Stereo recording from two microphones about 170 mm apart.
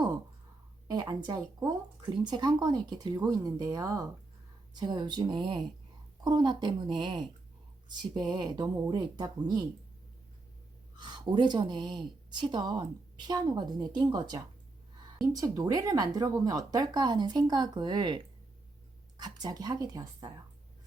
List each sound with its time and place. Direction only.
0.9 s speech: 25° right (ahead or behind)
10.9 s speech: 25° right (ahead or behind)